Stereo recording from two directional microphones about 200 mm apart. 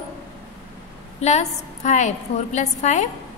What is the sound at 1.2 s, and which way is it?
A woman's voice, 35° left (ahead or behind).